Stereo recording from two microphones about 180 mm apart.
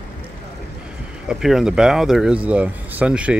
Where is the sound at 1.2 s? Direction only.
Centre (ahead or behind).